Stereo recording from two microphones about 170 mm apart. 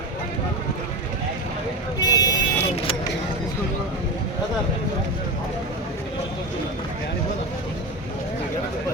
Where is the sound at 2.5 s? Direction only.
35° left (ahead or behind).